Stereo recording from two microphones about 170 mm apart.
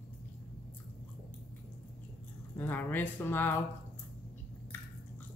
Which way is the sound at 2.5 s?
10° left (ahead or behind).